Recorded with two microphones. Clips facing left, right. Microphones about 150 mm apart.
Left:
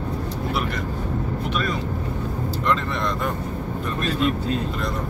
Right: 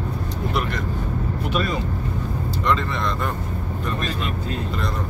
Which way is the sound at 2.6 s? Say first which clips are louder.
Right 1 dB; 5° left (ahead or behind).